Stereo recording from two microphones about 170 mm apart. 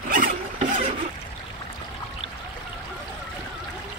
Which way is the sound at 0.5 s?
45° right (ahead or behind).